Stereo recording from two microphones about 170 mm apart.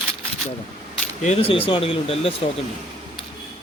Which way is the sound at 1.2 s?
40° left (ahead or behind).